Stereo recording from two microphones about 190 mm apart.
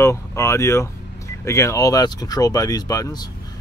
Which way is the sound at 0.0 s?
15° left (ahead or behind).